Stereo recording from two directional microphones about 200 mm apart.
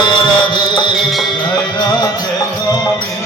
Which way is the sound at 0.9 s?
Centre (ahead or behind).